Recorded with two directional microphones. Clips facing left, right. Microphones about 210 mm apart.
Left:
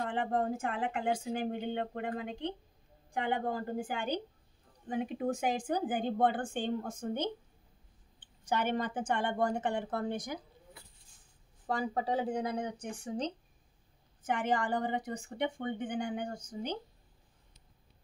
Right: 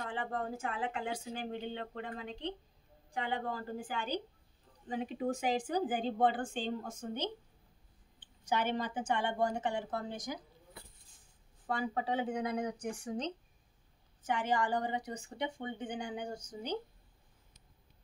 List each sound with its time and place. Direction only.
0.5 s speech: 50° left (ahead or behind)
11.7 s speech: 40° left (ahead or behind)
14.2 s speech: 55° left (ahead or behind)